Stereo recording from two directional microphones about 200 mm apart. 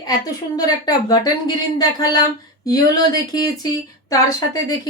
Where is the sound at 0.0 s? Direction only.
20° left (ahead or behind).